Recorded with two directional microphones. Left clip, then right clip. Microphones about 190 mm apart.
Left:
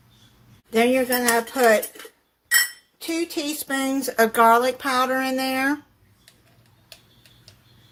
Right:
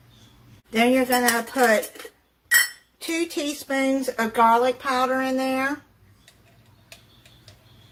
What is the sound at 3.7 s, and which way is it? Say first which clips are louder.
Speech: right 3 dB; 45° left (ahead or behind).